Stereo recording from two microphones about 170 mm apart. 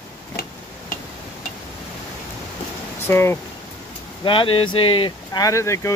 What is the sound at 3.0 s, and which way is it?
Speech, 15° left (ahead or behind).